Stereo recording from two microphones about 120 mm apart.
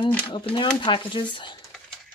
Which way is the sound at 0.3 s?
45° left (ahead or behind).